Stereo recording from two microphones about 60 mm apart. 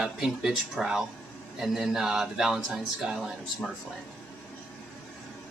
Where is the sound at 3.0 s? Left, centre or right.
Centre.